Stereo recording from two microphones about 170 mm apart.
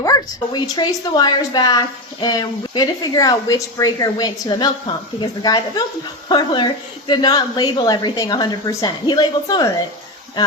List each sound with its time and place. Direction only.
0.0 s a woman's voice: 25° left (ahead or behind)